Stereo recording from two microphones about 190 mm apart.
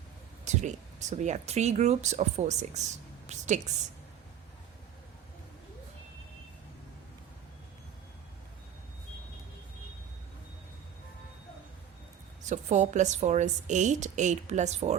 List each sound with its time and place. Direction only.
0.4 s a woman's voice: 40° right (ahead or behind)
12.5 s a woman's voice: 40° right (ahead or behind)